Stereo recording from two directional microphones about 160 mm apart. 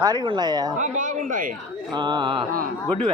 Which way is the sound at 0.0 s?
25° right (ahead or behind).